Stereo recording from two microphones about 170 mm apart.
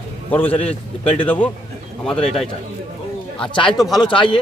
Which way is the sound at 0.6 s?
35° left (ahead or behind).